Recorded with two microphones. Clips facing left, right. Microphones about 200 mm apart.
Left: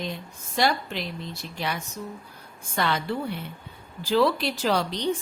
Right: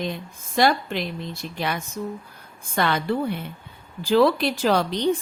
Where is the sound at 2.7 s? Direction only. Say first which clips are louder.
Right 3 dB; 55° right (ahead or behind).